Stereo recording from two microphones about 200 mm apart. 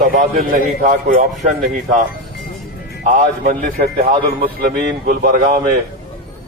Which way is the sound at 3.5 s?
45° right (ahead or behind).